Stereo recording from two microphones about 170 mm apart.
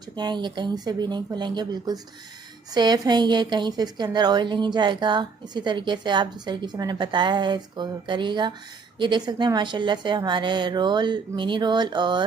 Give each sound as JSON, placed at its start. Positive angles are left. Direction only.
{"t": 0.2, "sound": "a woman's voice", "side_deg": -25}